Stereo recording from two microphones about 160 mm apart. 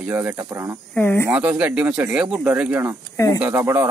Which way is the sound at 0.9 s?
15° left (ahead or behind).